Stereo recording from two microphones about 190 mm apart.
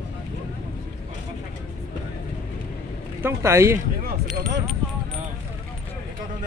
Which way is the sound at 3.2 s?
15° right (ahead or behind).